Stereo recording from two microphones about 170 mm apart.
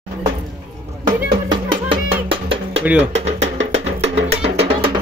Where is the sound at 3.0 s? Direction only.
40° right (ahead or behind).